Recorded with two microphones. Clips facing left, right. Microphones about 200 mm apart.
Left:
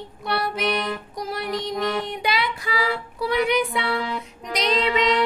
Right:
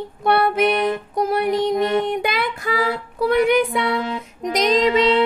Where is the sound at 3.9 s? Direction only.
20° right (ahead or behind).